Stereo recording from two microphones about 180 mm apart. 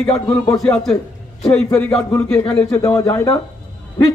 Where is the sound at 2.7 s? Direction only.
20° left (ahead or behind).